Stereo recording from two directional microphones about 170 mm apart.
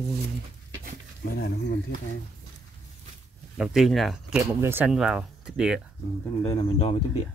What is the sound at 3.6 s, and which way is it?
Speech, centre (ahead or behind).